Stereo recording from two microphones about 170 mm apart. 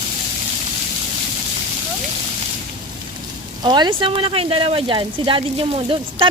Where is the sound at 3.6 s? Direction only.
25° right (ahead or behind).